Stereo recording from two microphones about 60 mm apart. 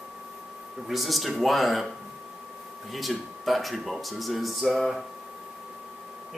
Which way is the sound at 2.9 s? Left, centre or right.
Centre.